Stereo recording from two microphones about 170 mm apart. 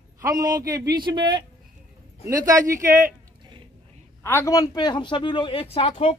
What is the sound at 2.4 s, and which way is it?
Speech, 50° right (ahead or behind).